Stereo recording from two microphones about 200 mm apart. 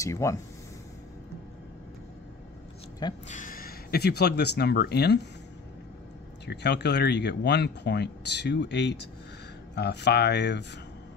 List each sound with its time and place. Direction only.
0.0 s speech: 15° left (ahead or behind)
3.3 s speech: 40° left (ahead or behind)
6.4 s speech: 60° left (ahead or behind)